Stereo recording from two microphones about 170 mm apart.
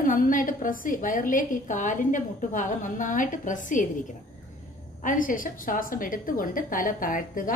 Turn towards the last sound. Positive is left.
turn(degrees=55)  # may be behind; listen again after turning